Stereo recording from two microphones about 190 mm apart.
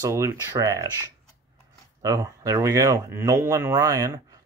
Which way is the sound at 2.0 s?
15° right (ahead or behind).